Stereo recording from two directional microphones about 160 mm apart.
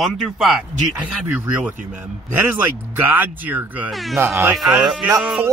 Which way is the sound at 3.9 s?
Centre (ahead or behind).